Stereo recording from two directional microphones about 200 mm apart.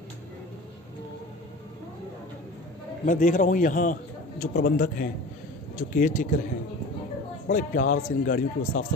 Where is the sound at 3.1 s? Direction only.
40° left (ahead or behind).